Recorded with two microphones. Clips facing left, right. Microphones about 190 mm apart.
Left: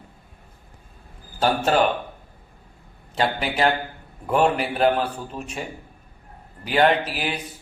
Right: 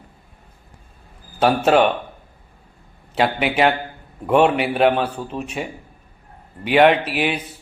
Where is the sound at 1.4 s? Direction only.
70° right (ahead or behind).